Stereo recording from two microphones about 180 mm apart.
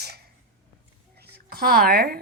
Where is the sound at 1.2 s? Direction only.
60° right (ahead or behind).